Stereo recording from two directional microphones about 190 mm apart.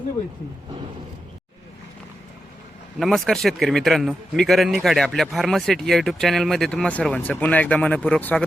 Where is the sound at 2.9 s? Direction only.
Centre (ahead or behind).